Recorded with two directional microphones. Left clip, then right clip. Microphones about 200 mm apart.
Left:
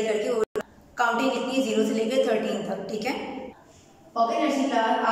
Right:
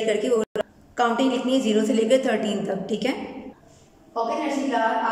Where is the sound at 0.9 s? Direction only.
35° right (ahead or behind).